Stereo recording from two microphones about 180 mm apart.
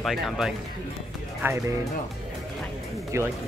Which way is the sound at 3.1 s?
15° right (ahead or behind).